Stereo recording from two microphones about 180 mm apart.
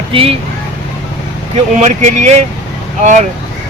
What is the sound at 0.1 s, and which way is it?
Speech, 30° right (ahead or behind).